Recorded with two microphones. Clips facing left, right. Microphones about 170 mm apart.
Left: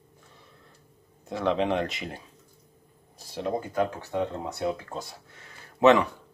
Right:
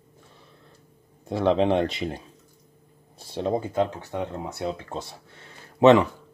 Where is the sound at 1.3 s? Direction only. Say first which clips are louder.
Right 5 dB; 30° right (ahead or behind).